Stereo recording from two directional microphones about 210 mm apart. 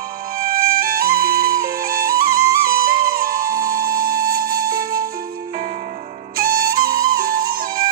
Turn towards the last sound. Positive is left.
turn(degrees=-45)  # may be behind; listen again after turning